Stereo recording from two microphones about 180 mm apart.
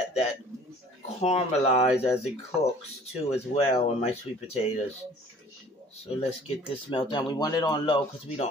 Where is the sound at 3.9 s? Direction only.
35° left (ahead or behind).